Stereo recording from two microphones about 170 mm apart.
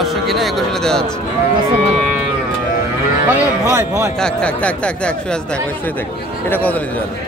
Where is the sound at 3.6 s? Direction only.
20° right (ahead or behind).